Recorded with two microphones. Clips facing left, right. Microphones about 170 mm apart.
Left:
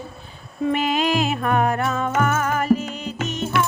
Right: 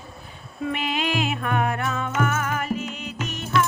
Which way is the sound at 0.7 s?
40° left (ahead or behind).